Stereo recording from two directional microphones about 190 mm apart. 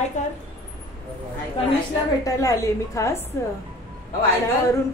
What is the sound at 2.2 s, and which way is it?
Speech, 15° left (ahead or behind).